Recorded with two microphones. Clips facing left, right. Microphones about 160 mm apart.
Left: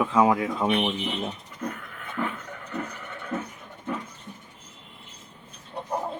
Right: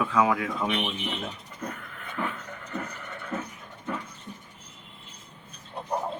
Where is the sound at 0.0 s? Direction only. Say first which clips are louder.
Left 3 dB; 25° left (ahead or behind).